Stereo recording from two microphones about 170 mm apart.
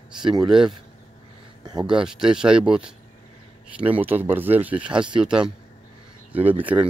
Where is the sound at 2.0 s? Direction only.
5° right (ahead or behind).